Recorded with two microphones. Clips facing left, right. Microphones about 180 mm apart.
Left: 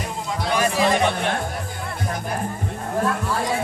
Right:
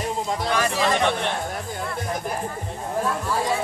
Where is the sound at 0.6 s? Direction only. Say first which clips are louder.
Left 4 dB; 15° left (ahead or behind).